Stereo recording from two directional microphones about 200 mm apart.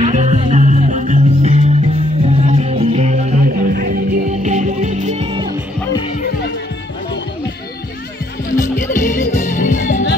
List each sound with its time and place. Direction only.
0.0 s music: 35° right (ahead or behind)
4.3 s music: 35° right (ahead or behind)
8.5 s music: 40° left (ahead or behind)